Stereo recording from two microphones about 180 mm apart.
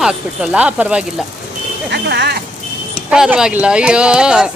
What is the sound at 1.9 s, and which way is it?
Vehicle, 70° right (ahead or behind).